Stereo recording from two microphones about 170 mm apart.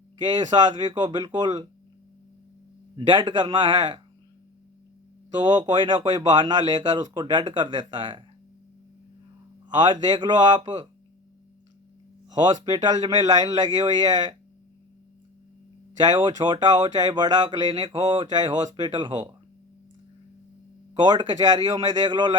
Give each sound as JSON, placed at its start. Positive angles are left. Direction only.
{"t": 0.5, "sound": "speech", "side_deg": -25}
{"t": 3.2, "sound": "speech", "side_deg": -30}
{"t": 5.4, "sound": "speech", "side_deg": -25}
{"t": 9.6, "sound": "speech", "side_deg": -25}
{"t": 12.3, "sound": "speech", "side_deg": -25}
{"t": 16.4, "sound": "speech", "side_deg": -25}
{"t": 21.0, "sound": "speech", "side_deg": -25}